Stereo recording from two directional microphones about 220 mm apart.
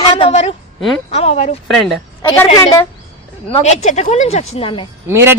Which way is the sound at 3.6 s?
30° left (ahead or behind).